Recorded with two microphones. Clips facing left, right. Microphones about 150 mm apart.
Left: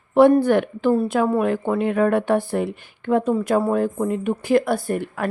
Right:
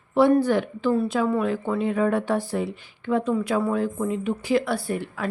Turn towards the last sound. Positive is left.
turn(degrees=50)  # may be behind; listen again after turning